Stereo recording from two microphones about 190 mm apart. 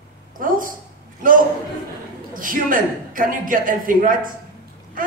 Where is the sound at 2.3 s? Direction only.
45° right (ahead or behind).